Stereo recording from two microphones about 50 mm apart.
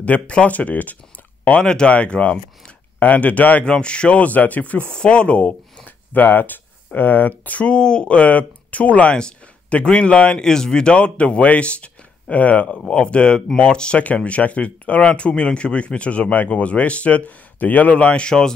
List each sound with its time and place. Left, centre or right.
0.0 s speech: left
1.6 s speech: centre
3.6 s speech: centre
4.9 s speech: centre
5.9 s speech: left; by 18.5 s centre